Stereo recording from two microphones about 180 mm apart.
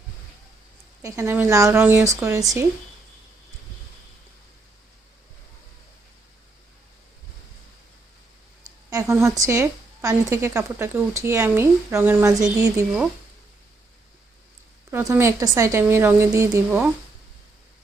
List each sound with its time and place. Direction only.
1.0 s a woman's voice: 15° right (ahead or behind)
8.9 s a woman's voice: 15° right (ahead or behind)
14.8 s a woman's voice: 10° right (ahead or behind)